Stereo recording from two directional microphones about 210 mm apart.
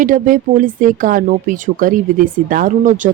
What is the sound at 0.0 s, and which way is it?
Speech, 40° right (ahead or behind).